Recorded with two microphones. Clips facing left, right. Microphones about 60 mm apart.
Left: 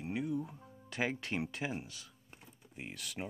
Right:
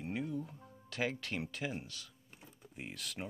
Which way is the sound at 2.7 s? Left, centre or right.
Centre.